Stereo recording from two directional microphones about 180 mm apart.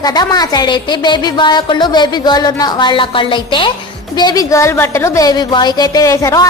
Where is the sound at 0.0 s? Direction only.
20° left (ahead or behind).